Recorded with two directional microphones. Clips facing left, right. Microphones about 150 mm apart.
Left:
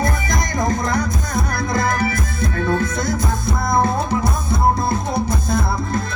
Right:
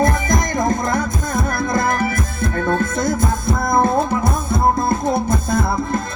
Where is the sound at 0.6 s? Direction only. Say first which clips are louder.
Right 1 dB; 50° right (ahead or behind).